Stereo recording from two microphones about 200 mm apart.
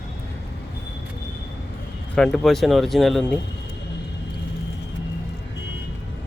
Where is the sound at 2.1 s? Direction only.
Centre (ahead or behind).